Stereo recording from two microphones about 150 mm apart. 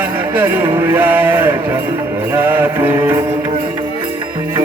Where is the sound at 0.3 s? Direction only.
15° right (ahead or behind).